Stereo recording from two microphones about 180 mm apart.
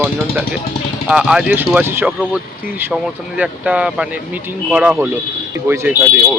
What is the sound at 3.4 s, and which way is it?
Speech, 10° right (ahead or behind).